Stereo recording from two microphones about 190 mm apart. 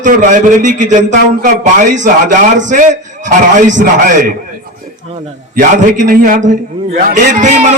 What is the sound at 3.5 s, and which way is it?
Speech, 40° right (ahead or behind).